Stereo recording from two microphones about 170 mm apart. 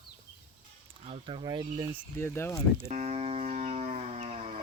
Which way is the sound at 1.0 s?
30° right (ahead or behind).